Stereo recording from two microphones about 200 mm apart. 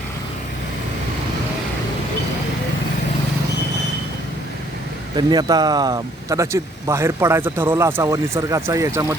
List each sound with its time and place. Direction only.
5.1 s speech: 20° right (ahead or behind)